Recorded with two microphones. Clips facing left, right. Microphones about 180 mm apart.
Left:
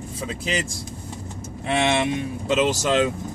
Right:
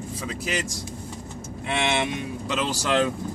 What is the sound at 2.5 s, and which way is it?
Speech, 20° left (ahead or behind).